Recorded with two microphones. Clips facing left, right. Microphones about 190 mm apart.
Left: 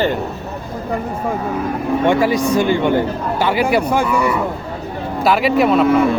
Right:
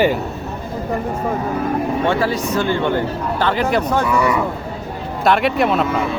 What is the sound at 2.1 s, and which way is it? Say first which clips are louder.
Speech: left 4 dB; 15° left (ahead or behind).